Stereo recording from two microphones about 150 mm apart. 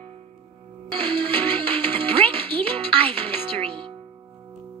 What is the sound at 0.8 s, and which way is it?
Music, 30° right (ahead or behind).